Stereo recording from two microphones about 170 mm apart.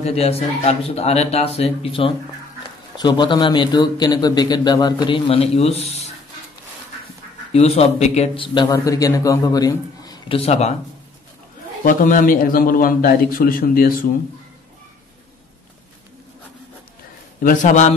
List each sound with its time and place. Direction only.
0.0 s speech: 35° left (ahead or behind)
7.5 s speech: 35° left (ahead or behind)
8.5 s speech: 20° left (ahead or behind); by 10.7 s 35° left (ahead or behind)
11.8 s a man's voice: 50° left (ahead or behind)
17.4 s a man's voice: 50° left (ahead or behind)